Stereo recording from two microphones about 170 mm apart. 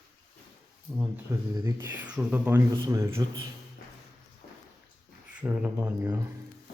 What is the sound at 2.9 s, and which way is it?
Speech, 20° right (ahead or behind).